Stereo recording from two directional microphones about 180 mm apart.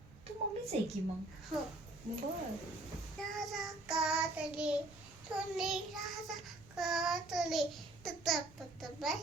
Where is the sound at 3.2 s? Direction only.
Centre (ahead or behind).